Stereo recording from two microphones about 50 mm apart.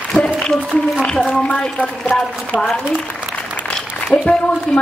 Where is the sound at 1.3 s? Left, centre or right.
Left.